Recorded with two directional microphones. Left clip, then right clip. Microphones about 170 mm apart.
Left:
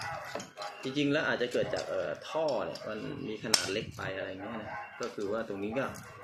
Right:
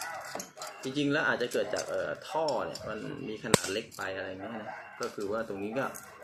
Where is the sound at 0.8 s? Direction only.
Centre (ahead or behind).